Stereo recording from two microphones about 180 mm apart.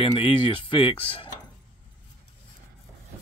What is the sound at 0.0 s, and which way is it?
Speech, 30° left (ahead or behind).